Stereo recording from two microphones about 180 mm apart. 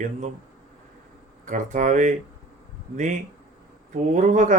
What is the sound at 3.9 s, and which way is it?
Speech, 45° right (ahead or behind).